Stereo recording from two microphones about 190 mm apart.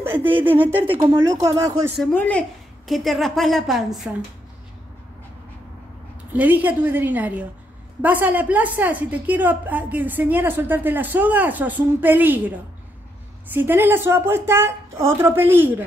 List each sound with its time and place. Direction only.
0.0 s a woman's voice: 10° right (ahead or behind)
2.1 s a woman's voice: 10° left (ahead or behind)
6.3 s a woman's voice: 10° right (ahead or behind)